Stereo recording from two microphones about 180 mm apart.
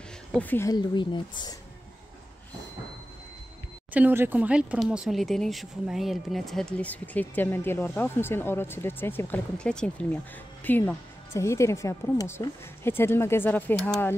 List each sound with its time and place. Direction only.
0.3 s a woman's voice: 10° left (ahead or behind)
0.9 s speech: 25° left (ahead or behind)
3.9 s a woman's voice: 10° right (ahead or behind); by 14.1 s 10° left (ahead or behind)